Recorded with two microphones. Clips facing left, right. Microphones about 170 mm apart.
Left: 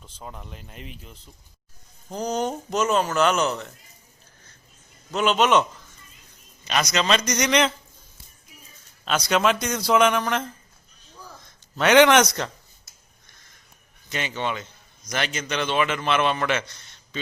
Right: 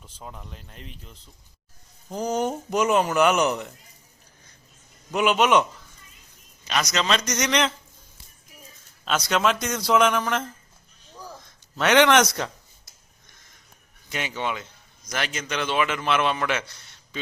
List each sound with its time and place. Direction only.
0.0 s a man's voice: centre (ahead or behind)
2.0 s speech: 5° right (ahead or behind)
5.1 s speech: 10° right (ahead or behind)
6.9 s a man's voice: centre (ahead or behind)
9.0 s a man's voice: centre (ahead or behind)
11.8 s a man's voice: 5° left (ahead or behind)
14.1 s a man's voice: 5° right (ahead or behind)